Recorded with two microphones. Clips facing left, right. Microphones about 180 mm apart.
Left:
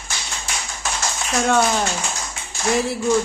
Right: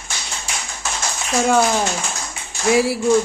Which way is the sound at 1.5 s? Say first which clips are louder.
Right 2 dB; 5° right (ahead or behind).